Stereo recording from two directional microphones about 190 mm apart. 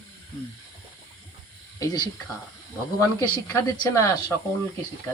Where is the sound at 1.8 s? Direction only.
20° left (ahead or behind).